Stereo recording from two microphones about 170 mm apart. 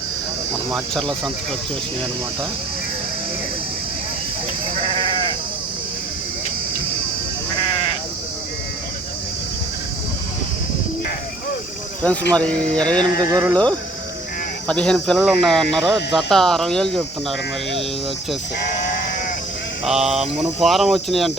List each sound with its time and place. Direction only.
0.7 s speech: centre (ahead or behind)
12.3 s speech: 5° left (ahead or behind)
13.1 s speech: 20° right (ahead or behind)
14.7 s speech: 5° left (ahead or behind)
19.8 s speech: centre (ahead or behind)